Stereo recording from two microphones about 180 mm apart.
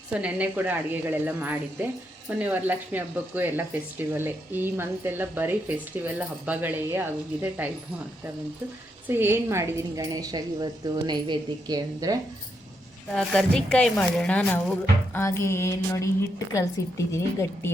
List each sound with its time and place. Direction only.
0.1 s speech: 5° right (ahead or behind)
9.0 s a woman's voice: 10° right (ahead or behind)
13.1 s a woman's voice: 5° left (ahead or behind)